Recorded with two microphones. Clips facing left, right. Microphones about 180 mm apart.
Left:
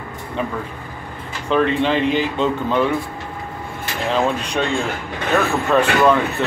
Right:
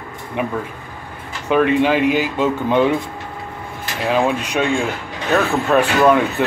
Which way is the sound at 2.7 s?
20° right (ahead or behind).